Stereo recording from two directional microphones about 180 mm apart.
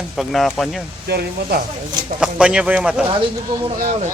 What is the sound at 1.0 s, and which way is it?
Speech, 60° right (ahead or behind).